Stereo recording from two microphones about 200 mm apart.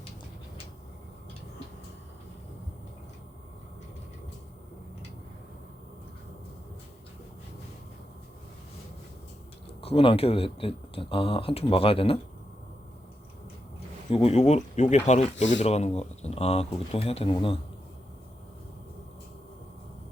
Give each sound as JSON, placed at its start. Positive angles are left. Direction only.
{"t": 9.8, "sound": "speech", "side_deg": 25}
{"t": 14.1, "sound": "speech", "side_deg": 30}